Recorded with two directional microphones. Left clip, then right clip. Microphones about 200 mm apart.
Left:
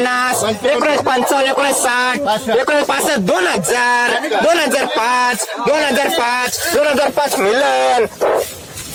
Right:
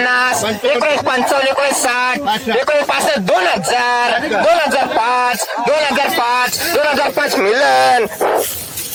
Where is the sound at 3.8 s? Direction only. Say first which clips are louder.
Left 3 dB; 30° left (ahead or behind).